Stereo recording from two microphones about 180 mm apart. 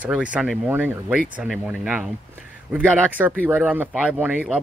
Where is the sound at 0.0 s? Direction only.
5° right (ahead or behind).